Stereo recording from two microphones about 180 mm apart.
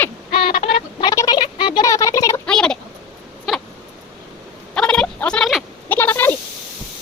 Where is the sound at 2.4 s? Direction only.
5° left (ahead or behind).